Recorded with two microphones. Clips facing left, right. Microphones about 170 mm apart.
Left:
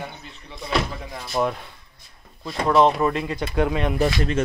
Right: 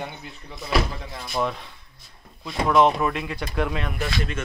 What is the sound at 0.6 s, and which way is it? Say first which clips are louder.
Speech: even; 5° right (ahead or behind).